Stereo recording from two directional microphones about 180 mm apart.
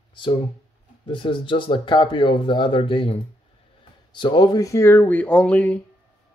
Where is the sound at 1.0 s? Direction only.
30° left (ahead or behind).